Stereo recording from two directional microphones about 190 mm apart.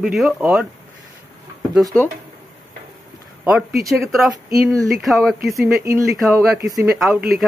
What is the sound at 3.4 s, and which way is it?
Speech, 5° right (ahead or behind).